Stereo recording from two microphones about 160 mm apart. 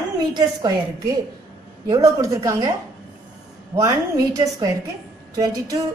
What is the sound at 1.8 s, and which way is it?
Speech, 20° right (ahead or behind).